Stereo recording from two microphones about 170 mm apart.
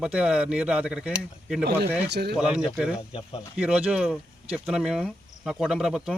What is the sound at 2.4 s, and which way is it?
Speech, 5° right (ahead or behind).